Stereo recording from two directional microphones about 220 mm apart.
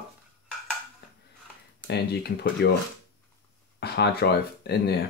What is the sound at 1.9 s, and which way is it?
Speech, 45° left (ahead or behind).